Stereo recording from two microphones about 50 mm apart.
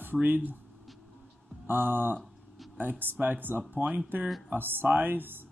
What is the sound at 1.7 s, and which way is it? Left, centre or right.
Speech, right.